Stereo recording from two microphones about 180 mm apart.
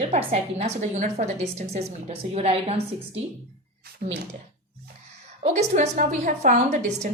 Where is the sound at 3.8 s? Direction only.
60° right (ahead or behind).